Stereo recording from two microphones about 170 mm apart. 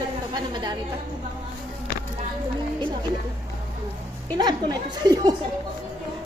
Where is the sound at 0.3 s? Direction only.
25° right (ahead or behind).